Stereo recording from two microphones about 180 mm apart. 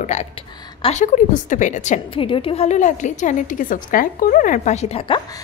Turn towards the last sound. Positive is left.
turn(degrees=35)  # may be behind; listen again after turning